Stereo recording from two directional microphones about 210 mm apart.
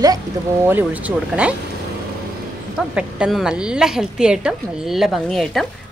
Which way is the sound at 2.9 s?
5° right (ahead or behind).